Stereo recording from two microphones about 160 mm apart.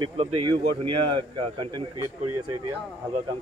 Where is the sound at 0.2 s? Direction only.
35° right (ahead or behind).